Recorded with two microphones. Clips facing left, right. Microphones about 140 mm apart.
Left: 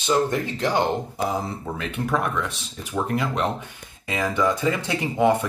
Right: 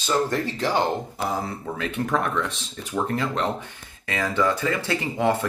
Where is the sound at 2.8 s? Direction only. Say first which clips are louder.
Even; 10° left (ahead or behind).